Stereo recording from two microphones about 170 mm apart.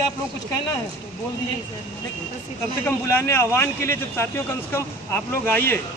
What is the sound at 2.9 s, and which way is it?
Speech, 15° left (ahead or behind).